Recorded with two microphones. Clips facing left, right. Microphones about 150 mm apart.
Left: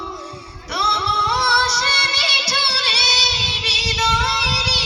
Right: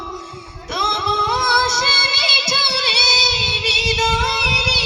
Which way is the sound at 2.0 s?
25° right (ahead or behind).